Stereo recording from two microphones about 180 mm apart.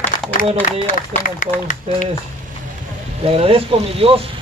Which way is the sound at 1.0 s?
45° left (ahead or behind).